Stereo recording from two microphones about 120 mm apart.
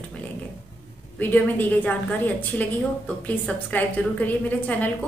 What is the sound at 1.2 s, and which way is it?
Speech, 15° left (ahead or behind).